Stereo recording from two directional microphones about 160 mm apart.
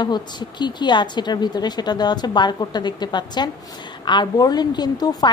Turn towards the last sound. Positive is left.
turn(degrees=25)  # may be behind; listen again after turning